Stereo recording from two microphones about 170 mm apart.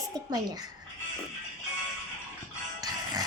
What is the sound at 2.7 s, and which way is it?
Music, 25° right (ahead or behind).